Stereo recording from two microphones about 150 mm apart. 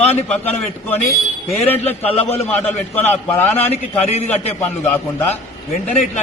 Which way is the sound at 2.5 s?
10° left (ahead or behind).